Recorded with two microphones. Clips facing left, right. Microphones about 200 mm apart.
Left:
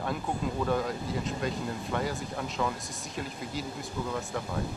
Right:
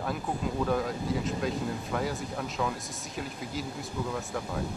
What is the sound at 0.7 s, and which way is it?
Speech, centre (ahead or behind).